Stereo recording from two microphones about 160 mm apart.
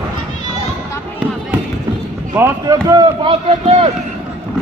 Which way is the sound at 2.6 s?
25° right (ahead or behind).